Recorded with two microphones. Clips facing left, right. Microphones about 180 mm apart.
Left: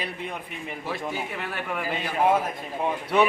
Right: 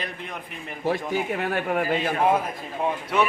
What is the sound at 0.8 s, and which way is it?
A man's voice, 45° right (ahead or behind).